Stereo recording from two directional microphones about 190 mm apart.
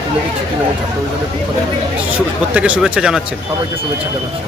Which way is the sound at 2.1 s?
5° right (ahead or behind).